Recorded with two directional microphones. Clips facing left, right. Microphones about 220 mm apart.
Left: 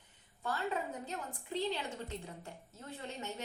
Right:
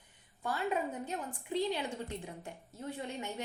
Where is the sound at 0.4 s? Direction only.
15° right (ahead or behind).